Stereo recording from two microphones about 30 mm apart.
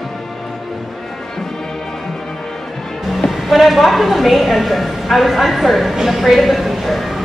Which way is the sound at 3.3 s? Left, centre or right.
Centre.